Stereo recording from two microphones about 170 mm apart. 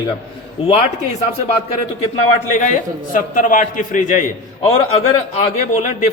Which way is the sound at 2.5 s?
45° left (ahead or behind).